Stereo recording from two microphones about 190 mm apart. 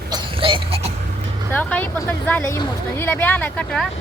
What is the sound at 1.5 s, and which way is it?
Speech, 10° left (ahead or behind).